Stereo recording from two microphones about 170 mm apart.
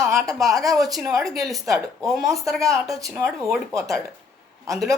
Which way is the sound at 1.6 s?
20° right (ahead or behind).